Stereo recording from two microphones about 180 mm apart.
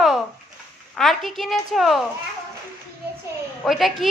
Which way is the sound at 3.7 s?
Centre (ahead or behind).